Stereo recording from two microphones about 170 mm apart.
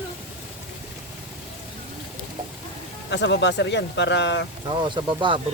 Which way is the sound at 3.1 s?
90° left.